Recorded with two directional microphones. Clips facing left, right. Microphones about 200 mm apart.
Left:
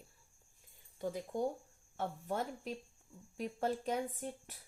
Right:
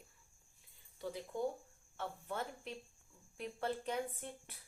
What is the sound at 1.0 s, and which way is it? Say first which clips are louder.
A woman's voice: left 3 dB; 45° left (ahead or behind).